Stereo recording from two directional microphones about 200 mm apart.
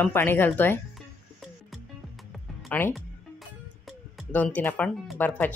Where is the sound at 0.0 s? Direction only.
10° left (ahead or behind).